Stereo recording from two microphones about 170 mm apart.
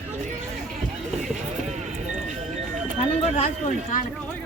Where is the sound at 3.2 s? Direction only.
40° left (ahead or behind).